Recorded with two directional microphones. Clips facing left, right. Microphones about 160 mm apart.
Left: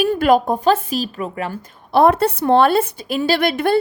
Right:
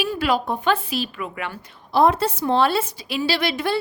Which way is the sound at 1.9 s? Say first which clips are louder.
Left 4 dB; 60° left (ahead or behind).